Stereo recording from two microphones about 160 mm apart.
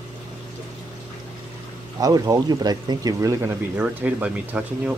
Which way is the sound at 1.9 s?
20° right (ahead or behind).